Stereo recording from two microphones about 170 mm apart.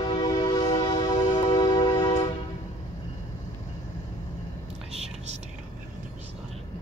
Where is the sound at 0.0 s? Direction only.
25° left (ahead or behind).